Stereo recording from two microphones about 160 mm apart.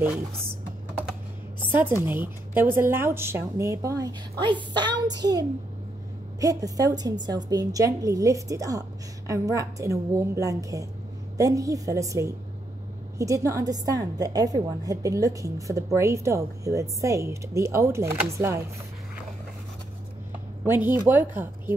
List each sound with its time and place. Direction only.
1.6 s music: 15° right (ahead or behind)
2.0 s a woman's voice: 10° right (ahead or behind)
6.4 s a woman's voice: 20° right (ahead or behind)
20.6 s a woman's voice: 15° right (ahead or behind)